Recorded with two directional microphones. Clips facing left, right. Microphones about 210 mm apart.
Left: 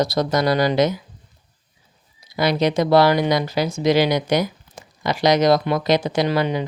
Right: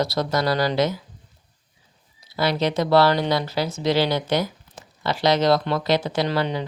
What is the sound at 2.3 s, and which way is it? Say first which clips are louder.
Speech: left 3 dB; 15° left (ahead or behind).